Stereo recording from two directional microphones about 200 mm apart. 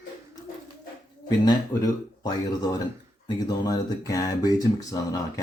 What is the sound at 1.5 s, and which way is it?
Speech, 20° left (ahead or behind).